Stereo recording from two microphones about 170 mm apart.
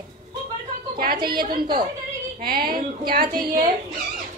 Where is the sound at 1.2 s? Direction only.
60° right (ahead or behind).